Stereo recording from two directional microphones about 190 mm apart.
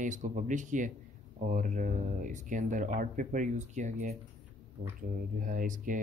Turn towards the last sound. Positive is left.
turn(degrees=-45)  # may be behind; listen again after turning